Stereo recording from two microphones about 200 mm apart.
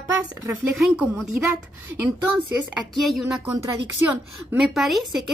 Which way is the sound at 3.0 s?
Centre (ahead or behind).